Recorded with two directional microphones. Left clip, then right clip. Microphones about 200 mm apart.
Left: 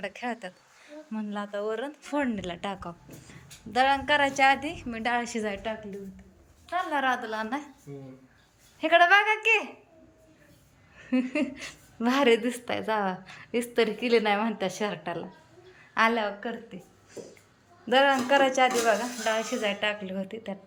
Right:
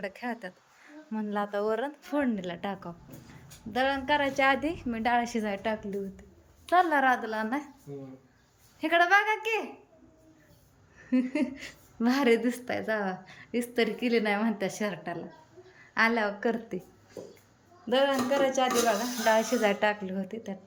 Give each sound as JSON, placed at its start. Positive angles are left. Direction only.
{"t": 0.0, "sound": "a woman's voice", "side_deg": -10}
{"t": 8.8, "sound": "a woman's voice", "side_deg": -10}
{"t": 11.1, "sound": "a woman's voice", "side_deg": -5}
{"t": 16.4, "sound": "a woman's voice", "side_deg": -25}
{"t": 17.8, "sound": "speech", "side_deg": -5}
{"t": 19.2, "sound": "a woman's voice", "side_deg": -15}